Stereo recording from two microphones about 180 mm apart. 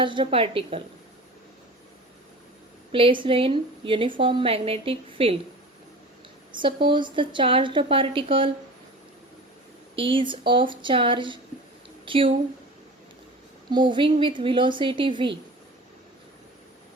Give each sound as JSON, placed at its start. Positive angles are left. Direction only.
{"t": 0.0, "sound": "a woman's voice", "side_deg": -25}
{"t": 2.9, "sound": "a woman's voice", "side_deg": -30}
{"t": 6.5, "sound": "a woman's voice", "side_deg": -25}
{"t": 9.9, "sound": "a woman's voice", "side_deg": -30}
{"t": 13.7, "sound": "a woman's voice", "side_deg": -25}